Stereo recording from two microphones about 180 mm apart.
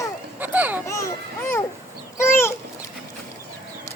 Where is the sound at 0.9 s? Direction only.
15° left (ahead or behind).